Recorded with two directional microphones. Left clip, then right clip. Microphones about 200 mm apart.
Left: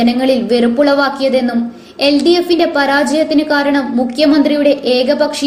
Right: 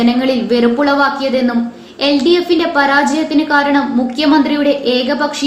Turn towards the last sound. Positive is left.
turn(degrees=40)  # may be behind; listen again after turning